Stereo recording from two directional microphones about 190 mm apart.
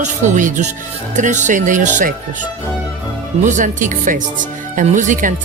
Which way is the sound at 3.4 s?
40° right (ahead or behind).